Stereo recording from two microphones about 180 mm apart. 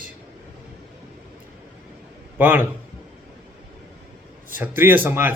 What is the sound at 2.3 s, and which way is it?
Speech, 10° right (ahead or behind).